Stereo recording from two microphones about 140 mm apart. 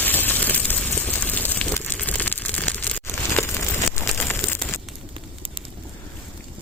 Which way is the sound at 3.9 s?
15° left (ahead or behind).